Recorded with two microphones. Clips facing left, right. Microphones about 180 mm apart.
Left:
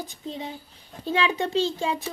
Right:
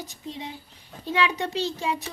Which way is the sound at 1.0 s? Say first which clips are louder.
Left 1 dB; 30° left (ahead or behind).